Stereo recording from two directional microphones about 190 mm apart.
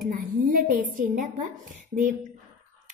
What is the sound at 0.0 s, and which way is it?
A woman's voice, 45° right (ahead or behind).